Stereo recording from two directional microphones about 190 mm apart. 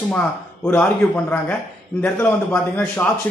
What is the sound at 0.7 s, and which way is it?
A man's voice, 10° left (ahead or behind).